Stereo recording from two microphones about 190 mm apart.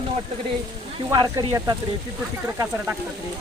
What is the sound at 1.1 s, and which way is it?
Speech, 20° right (ahead or behind).